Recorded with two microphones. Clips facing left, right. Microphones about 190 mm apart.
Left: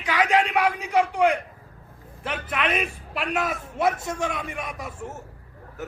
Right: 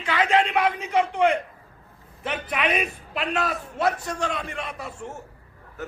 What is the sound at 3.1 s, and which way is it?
Speech, 5° left (ahead or behind).